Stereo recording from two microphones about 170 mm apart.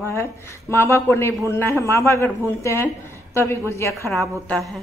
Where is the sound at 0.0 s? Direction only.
15° left (ahead or behind).